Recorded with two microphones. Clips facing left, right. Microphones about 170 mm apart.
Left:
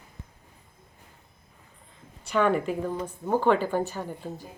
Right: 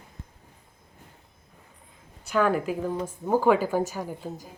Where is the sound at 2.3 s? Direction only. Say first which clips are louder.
Even; 5° right (ahead or behind).